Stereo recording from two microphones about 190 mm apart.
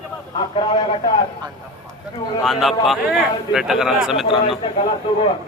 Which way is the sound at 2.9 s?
5° right (ahead or behind).